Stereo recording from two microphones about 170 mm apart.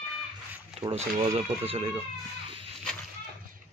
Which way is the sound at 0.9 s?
40° right (ahead or behind).